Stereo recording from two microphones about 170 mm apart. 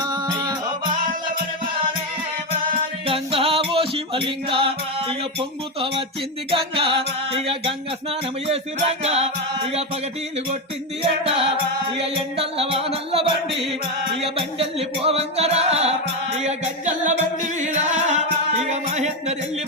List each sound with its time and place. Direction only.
0.0 s music: 20° right (ahead or behind)
3.1 s music: 35° right (ahead or behind)
11.0 s music: 35° right (ahead or behind)